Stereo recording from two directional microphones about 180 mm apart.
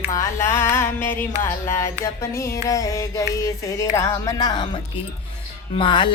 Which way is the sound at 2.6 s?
20° left (ahead or behind).